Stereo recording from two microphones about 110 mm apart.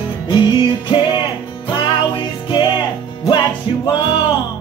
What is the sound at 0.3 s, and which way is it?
Music, 45° left (ahead or behind).